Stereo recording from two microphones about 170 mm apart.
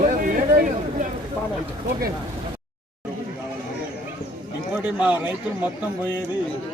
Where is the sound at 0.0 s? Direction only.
55° right (ahead or behind).